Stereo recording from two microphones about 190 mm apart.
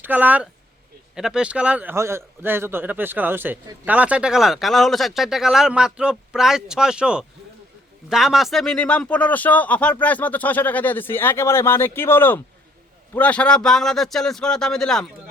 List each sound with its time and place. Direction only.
0.0 s a man's voice: 10° right (ahead or behind)